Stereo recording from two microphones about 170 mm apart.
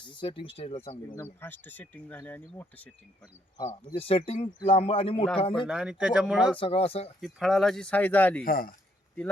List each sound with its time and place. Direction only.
0.1 s speech: 30° left (ahead or behind)
1.1 s speech: 15° left (ahead or behind)
3.8 s speech: 35° left (ahead or behind)
5.6 s speech: 5° right (ahead or behind)
6.6 s speech: 35° left (ahead or behind)
7.2 s speech: centre (ahead or behind)
8.4 s speech: 55° left (ahead or behind)